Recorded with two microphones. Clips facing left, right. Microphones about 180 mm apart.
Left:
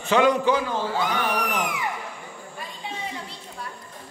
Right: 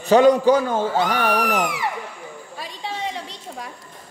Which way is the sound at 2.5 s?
90° right.